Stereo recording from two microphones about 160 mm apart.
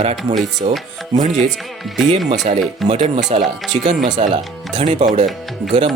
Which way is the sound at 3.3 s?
40° right (ahead or behind).